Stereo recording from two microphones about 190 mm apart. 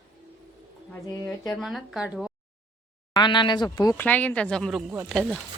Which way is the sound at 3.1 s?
25° left (ahead or behind).